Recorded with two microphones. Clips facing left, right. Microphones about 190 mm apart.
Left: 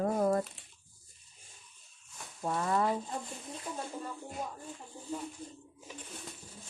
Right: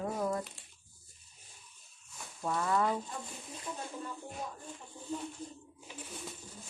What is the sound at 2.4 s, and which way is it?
Speech, 30° left (ahead or behind).